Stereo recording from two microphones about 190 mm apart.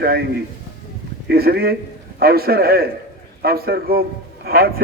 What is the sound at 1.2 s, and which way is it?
A man's voice, 55° right (ahead or behind).